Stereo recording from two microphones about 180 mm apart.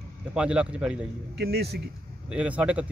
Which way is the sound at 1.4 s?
65° right (ahead or behind).